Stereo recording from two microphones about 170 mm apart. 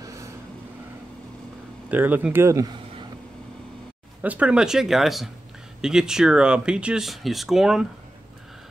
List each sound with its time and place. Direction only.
0.0 s vehicle: 20° right (ahead or behind)
1.9 s speech: 10° right (ahead or behind)
4.2 s speech: 10° right (ahead or behind)